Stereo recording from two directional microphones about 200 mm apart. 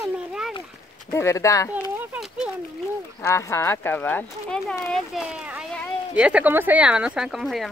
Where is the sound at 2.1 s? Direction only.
5° right (ahead or behind).